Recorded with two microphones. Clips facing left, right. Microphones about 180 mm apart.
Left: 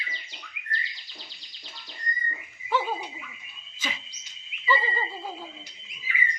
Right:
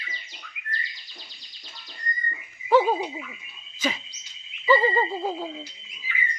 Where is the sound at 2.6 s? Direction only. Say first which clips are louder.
Right 9 dB; 45° right (ahead or behind).